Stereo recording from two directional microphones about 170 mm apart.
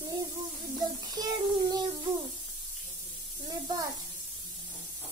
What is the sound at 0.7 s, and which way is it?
Child singing, 20° right (ahead or behind).